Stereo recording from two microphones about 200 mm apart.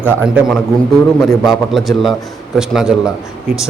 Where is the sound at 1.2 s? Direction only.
Centre (ahead or behind).